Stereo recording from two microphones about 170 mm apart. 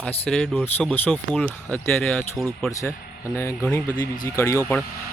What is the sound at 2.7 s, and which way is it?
Speech, 20° left (ahead or behind).